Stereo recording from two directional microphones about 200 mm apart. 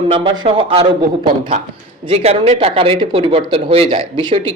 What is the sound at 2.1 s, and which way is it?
Speech, 30° right (ahead or behind).